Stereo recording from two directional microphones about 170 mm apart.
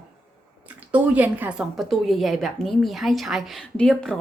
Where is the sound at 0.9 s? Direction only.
10° right (ahead or behind).